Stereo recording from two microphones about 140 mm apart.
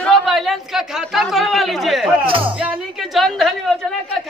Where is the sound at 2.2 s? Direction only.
40° right (ahead or behind).